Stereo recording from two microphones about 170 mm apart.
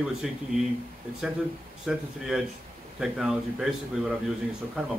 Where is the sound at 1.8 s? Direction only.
5° right (ahead or behind).